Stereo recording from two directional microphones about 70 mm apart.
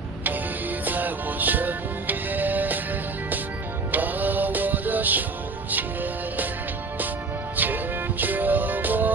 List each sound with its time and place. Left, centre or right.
0.8 s music: right
3.9 s music: right
7.5 s music: right